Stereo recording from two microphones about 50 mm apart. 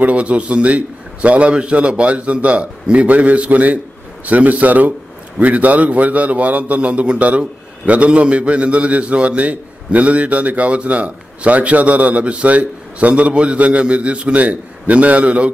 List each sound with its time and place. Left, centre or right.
0.0 s a man's voice: right